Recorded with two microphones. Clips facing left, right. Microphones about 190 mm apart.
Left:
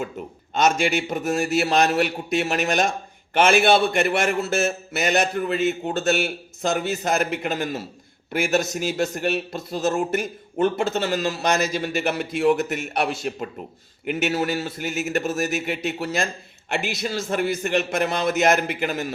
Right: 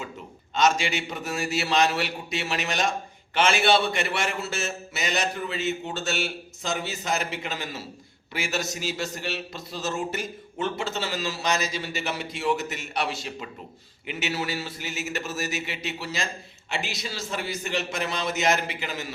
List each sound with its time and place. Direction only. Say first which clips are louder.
0.5 s a man's voice: left 3 dB; 50° left (ahead or behind)